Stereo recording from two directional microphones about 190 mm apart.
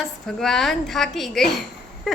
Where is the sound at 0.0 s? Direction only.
Centre (ahead or behind).